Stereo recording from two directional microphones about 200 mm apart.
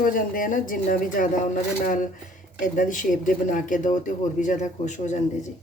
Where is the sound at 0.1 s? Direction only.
45° left (ahead or behind).